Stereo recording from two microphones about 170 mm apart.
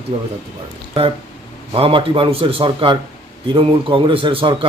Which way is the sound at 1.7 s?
30° right (ahead or behind).